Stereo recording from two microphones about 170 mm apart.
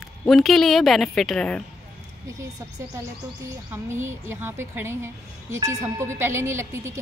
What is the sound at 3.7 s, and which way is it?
A woman's voice, 15° right (ahead or behind).